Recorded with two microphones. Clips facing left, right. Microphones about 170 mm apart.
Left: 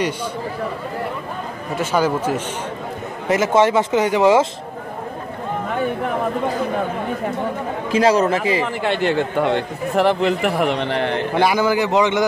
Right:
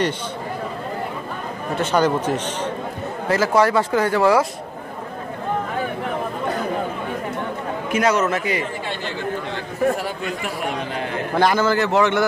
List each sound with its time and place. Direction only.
1.8 s a man's voice: 5° left (ahead or behind)
3.3 s speech: 20° left (ahead or behind)
7.9 s speech: 30° left (ahead or behind)
8.6 s a man's voice: 65° left (ahead or behind)
11.3 s a man's voice: 15° left (ahead or behind)